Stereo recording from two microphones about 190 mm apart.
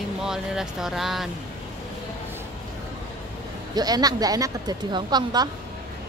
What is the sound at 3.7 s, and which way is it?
A woman's voice, 20° right (ahead or behind).